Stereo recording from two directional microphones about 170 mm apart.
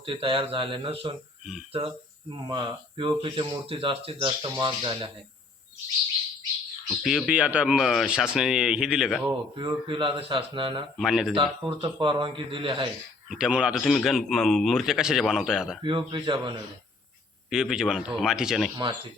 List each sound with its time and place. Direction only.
0.0 s speech: 30° right (ahead or behind)
2.5 s speech: 30° right (ahead or behind)
6.8 s a man's voice: centre (ahead or behind)
9.2 s speech: 30° right (ahead or behind)
10.9 s a man's voice: centre (ahead or behind)
11.3 s speech: 30° right (ahead or behind)
13.2 s a man's voice: 5° right (ahead or behind)
15.8 s speech: 30° right (ahead or behind)
17.5 s a man's voice: 5° right (ahead or behind)